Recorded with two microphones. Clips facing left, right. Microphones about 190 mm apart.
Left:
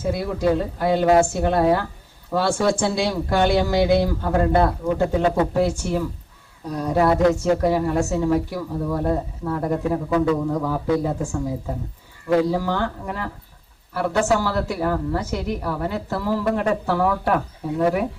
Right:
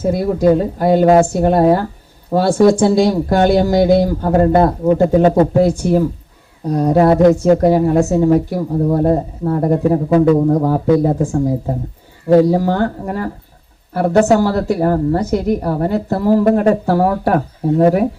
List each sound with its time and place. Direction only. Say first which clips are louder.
0.0 s a woman's voice: right 8 dB; 45° right (ahead or behind)